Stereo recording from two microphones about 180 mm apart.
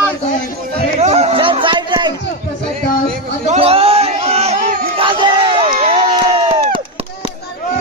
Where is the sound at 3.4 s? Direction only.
30° right (ahead or behind).